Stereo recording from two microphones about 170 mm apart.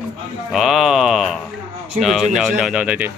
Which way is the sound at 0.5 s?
Centre (ahead or behind).